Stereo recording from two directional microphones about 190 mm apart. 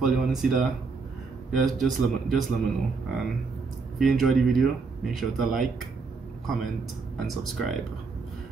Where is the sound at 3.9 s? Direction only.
Centre (ahead or behind).